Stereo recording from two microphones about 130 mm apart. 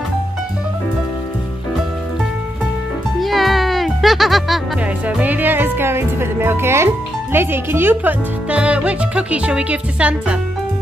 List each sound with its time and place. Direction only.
3.2 s music: centre (ahead or behind)
5.0 s speech: 10° right (ahead or behind)